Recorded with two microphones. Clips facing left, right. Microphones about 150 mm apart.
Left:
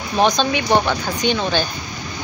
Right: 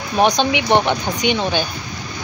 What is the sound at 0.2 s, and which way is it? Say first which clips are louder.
Speech: right 1 dB; 15° right (ahead or behind).